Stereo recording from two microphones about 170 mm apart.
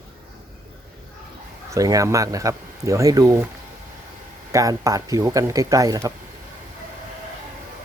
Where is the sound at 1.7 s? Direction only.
20° right (ahead or behind).